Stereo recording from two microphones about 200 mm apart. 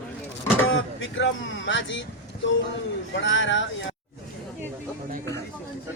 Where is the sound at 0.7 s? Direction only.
75° left (ahead or behind).